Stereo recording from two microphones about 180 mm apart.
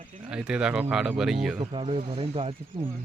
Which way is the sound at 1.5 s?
30° right (ahead or behind).